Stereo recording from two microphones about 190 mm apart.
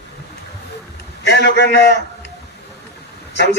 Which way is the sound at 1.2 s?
60° left (ahead or behind).